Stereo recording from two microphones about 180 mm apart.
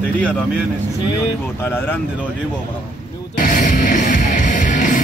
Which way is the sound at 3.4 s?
50° left (ahead or behind).